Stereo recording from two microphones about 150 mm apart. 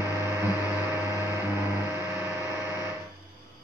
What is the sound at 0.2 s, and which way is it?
Music, 15° right (ahead or behind).